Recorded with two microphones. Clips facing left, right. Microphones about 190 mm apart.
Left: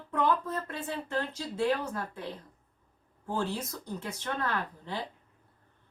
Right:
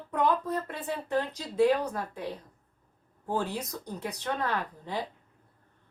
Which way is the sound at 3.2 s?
15° right (ahead or behind).